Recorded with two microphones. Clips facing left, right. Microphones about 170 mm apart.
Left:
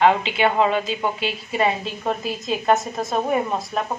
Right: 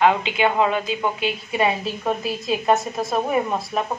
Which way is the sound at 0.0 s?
10° right (ahead or behind).